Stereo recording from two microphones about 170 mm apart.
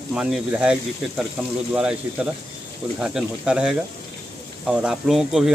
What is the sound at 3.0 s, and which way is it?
Speech, 5° right (ahead or behind).